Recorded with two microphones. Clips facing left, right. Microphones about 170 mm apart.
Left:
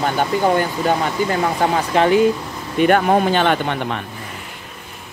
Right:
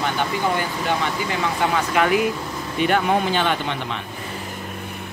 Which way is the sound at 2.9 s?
50° left (ahead or behind).